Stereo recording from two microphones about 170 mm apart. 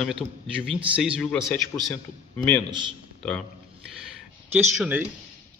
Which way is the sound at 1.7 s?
20° left (ahead or behind).